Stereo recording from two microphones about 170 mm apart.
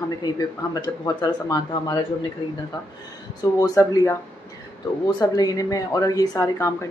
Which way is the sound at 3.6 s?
20° left (ahead or behind).